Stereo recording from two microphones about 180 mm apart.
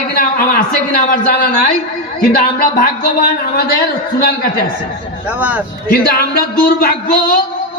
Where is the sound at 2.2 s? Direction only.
55° left (ahead or behind).